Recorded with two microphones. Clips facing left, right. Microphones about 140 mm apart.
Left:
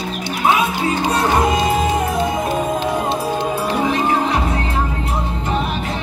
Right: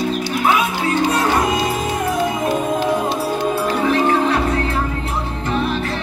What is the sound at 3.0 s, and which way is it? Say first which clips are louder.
Music: even; 20° left (ahead or behind).